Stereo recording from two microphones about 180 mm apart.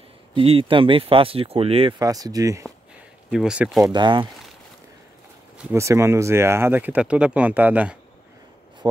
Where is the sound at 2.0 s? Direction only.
20° right (ahead or behind).